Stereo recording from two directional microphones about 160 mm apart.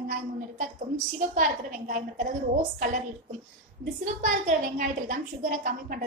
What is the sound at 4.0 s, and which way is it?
A woman's voice, 55° right (ahead or behind).